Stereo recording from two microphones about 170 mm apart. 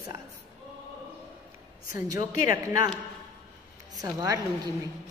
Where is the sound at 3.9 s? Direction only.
20° right (ahead or behind).